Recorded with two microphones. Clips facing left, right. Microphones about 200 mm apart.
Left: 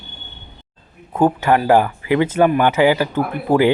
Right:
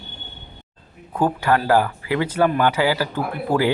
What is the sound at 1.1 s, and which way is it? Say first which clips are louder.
Speech: left 4 dB; 20° left (ahead or behind).